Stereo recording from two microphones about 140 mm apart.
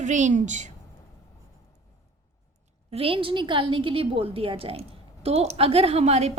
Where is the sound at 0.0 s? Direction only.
60° right (ahead or behind).